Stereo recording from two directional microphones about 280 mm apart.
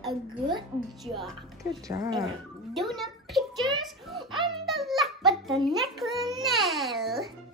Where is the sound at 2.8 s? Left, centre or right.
Centre.